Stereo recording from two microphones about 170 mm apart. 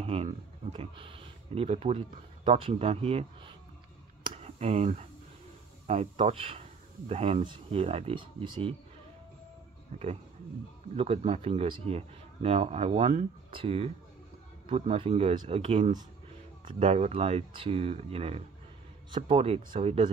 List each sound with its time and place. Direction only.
0.0 s speech: 35° right (ahead or behind)
4.3 s a sound: 40° right (ahead or behind)
5.9 s speech: 40° right (ahead or behind)
11.0 s speech: 40° right (ahead or behind)